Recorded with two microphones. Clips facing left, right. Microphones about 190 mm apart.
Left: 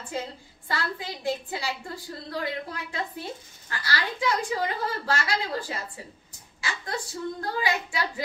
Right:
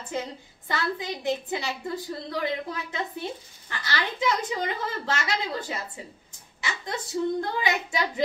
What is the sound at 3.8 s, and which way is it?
A woman's voice, 20° right (ahead or behind).